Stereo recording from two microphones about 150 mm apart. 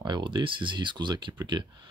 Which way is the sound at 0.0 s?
30° right (ahead or behind).